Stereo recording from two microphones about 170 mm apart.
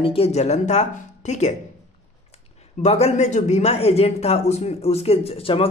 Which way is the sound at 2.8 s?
40° left (ahead or behind).